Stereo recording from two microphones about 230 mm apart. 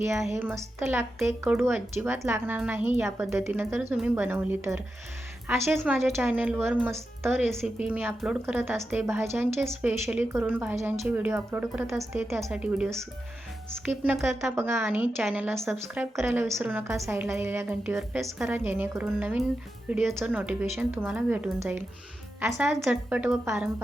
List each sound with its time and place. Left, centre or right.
0.3 s a woman's voice: centre